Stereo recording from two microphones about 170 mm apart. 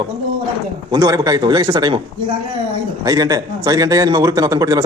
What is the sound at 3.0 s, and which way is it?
Speech, 20° right (ahead or behind).